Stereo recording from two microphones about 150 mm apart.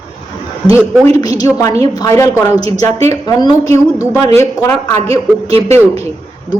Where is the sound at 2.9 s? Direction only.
45° right (ahead or behind).